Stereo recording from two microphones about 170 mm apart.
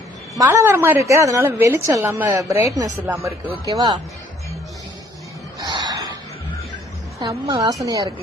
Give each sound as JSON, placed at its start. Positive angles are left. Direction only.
{"t": 0.3, "sound": "a woman's voice", "side_deg": -20}
{"t": 5.5, "sound": "gasp", "side_deg": -25}
{"t": 7.2, "sound": "a woman's voice", "side_deg": -25}